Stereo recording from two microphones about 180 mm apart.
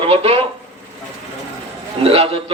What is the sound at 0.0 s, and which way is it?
Speech, 35° right (ahead or behind).